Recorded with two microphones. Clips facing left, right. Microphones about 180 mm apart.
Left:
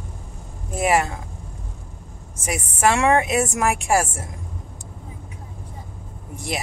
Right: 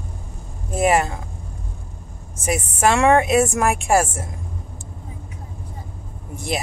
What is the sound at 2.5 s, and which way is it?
Speech, 30° right (ahead or behind).